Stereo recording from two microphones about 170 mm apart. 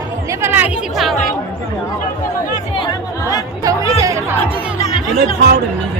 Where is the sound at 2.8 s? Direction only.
20° left (ahead or behind).